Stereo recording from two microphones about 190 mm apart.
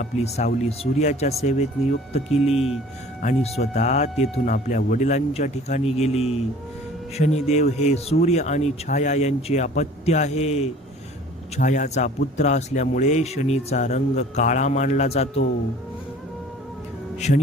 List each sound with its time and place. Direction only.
0.0 s a man's voice: 35° left (ahead or behind)
3.2 s a man's voice: 35° left (ahead or behind)
17.2 s a man's voice: 35° left (ahead or behind)